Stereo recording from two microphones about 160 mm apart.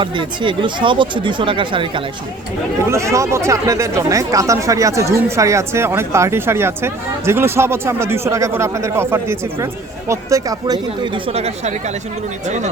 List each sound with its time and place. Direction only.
0.0 s speech: 30° right (ahead or behind)
2.9 s speech: 20° right (ahead or behind); by 11.7 s 40° right (ahead or behind)